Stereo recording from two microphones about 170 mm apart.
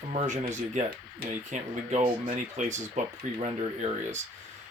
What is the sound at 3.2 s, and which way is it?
Speech, 50° right (ahead or behind).